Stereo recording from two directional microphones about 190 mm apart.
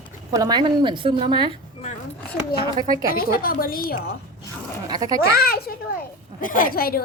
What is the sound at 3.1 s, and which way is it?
Speech, 50° left (ahead or behind).